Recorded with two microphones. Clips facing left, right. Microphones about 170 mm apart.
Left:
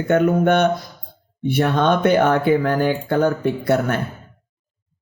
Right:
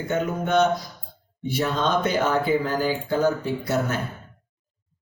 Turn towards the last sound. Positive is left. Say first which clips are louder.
# left 6 dB
turn(degrees=60)  # may be behind; listen again after turning